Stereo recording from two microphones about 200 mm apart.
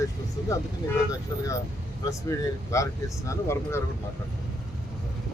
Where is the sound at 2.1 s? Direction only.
15° left (ahead or behind).